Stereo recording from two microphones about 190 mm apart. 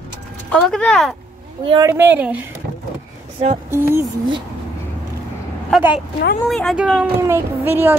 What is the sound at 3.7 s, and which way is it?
Speech, 10° right (ahead or behind).